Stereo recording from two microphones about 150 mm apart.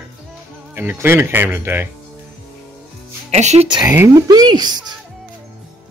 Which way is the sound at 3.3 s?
50° right (ahead or behind).